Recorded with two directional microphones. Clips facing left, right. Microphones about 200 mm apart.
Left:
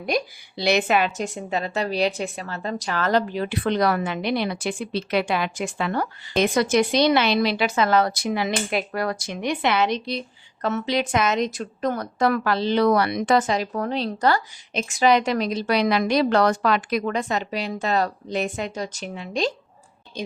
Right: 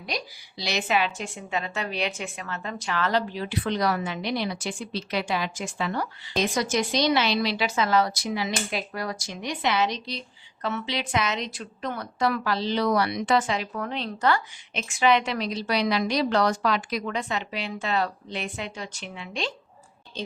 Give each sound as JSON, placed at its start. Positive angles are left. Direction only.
{"t": 0.0, "sound": "a woman's voice", "side_deg": 55}
{"t": 20.1, "sound": "a woman's voice", "side_deg": 10}